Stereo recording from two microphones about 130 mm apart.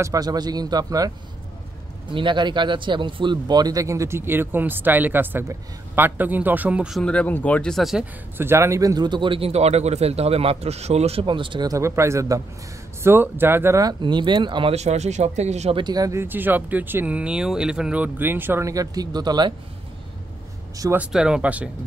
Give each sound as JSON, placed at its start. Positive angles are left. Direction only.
{"t": 0.0, "sound": "speech", "side_deg": -25}
{"t": 2.0, "sound": "speech", "side_deg": -40}
{"t": 7.0, "sound": "speech", "side_deg": 10}
{"t": 8.4, "sound": "a man's voice", "side_deg": -20}
{"t": 11.7, "sound": "speech", "side_deg": -20}
{"t": 14.7, "sound": "speech", "side_deg": -55}
{"t": 15.7, "sound": "speech", "side_deg": -35}
{"t": 20.9, "sound": "speech", "side_deg": -10}